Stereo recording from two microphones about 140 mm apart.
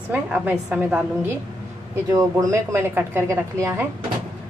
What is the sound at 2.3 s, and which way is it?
A woman's voice, 20° right (ahead or behind).